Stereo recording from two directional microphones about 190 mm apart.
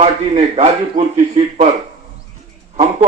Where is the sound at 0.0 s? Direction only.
35° right (ahead or behind).